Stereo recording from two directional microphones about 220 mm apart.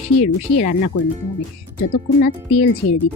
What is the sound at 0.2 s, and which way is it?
Speech, 30° left (ahead or behind).